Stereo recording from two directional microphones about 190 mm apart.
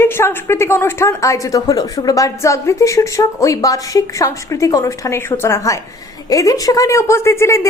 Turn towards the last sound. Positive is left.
turn(degrees=15)  # may be behind; listen again after turning